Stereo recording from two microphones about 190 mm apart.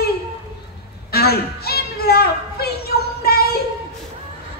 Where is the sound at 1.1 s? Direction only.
55° left (ahead or behind).